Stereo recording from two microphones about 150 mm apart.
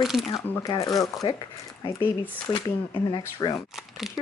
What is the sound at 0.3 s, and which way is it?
Speech, 25° left (ahead or behind).